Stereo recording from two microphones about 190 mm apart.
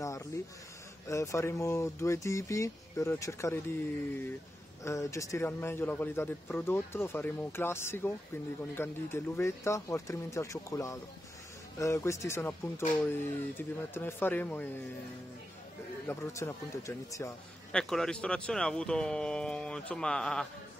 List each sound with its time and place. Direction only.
0.0 s a sound: 15° left (ahead or behind)
1.0 s speech: 15° left (ahead or behind)
4.8 s speech: 15° left (ahead or behind)
16.1 s speech: 15° left (ahead or behind)
17.7 s speech: 5° left (ahead or behind)